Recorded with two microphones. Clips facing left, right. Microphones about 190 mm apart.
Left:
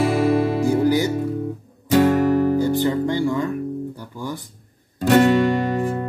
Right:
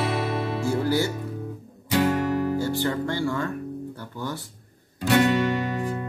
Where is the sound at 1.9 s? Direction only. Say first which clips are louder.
Left 7 dB; 45° left (ahead or behind).